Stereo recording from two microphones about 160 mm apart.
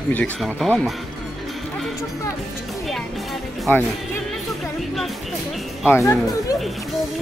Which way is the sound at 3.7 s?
10° left (ahead or behind).